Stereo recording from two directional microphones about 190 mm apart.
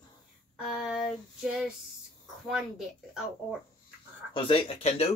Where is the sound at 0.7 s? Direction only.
Centre (ahead or behind).